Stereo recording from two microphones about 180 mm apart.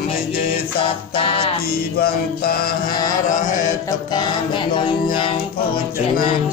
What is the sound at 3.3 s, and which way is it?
Mantra, 45° left (ahead or behind).